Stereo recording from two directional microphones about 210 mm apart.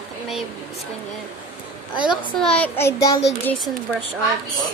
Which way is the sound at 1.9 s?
20° left (ahead or behind).